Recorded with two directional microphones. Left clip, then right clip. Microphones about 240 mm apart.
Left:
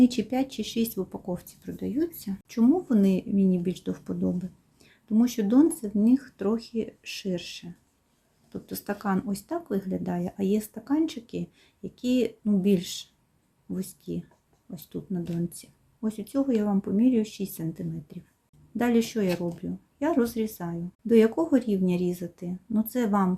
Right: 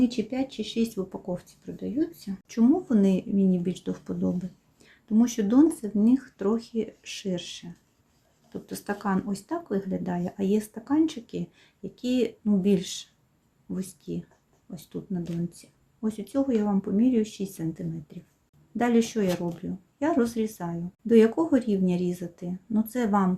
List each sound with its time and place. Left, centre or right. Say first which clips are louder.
0.0 s speech: left 3 dB; centre